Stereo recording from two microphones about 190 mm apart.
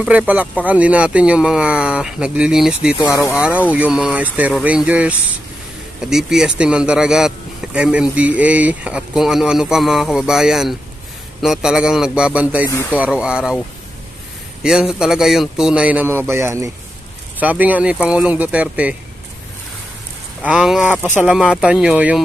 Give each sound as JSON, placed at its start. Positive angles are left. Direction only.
{"t": 0.0, "sound": "a man's voice", "side_deg": -5}
{"t": 3.0, "sound": "speech", "side_deg": 15}
{"t": 3.3, "sound": "a man's voice", "side_deg": -5}
{"t": 14.6, "sound": "a man's voice", "side_deg": -5}
{"t": 20.4, "sound": "a man's voice", "side_deg": -5}